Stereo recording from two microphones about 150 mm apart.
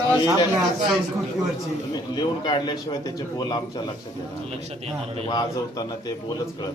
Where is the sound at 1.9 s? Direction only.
25° left (ahead or behind).